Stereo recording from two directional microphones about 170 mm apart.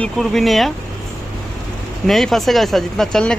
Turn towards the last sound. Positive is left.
turn(degrees=5)  # may be behind; listen again after turning